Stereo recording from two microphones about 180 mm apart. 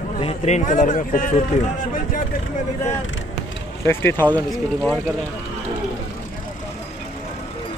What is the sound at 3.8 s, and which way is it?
Speech, 15° left (ahead or behind).